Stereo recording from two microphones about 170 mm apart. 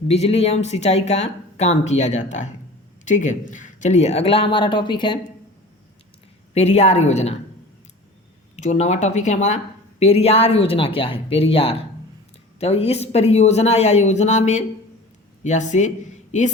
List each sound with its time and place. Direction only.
0.1 s speech: 40° left (ahead or behind)
6.5 s speech: 40° left (ahead or behind)
8.5 s speech: 45° left (ahead or behind)